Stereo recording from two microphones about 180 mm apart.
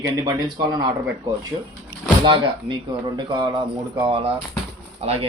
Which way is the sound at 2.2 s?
25° right (ahead or behind).